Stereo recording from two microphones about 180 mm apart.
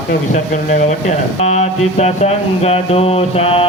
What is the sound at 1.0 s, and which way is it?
Speech, 40° left (ahead or behind).